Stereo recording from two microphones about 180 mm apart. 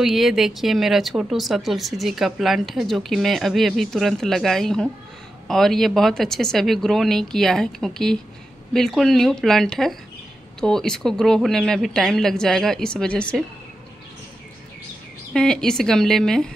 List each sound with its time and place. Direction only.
0.0 s speech: centre (ahead or behind)
15.3 s speech: 5° left (ahead or behind)